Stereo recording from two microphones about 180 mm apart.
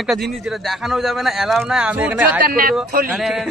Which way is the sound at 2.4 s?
55° right (ahead or behind).